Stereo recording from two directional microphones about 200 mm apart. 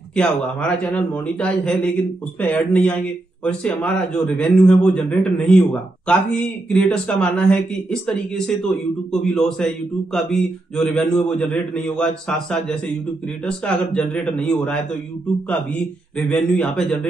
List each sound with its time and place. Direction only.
0.1 s a man's voice: 5° left (ahead or behind)
9.2 s a man's voice: centre (ahead or behind)
16.2 s a man's voice: 5° left (ahead or behind)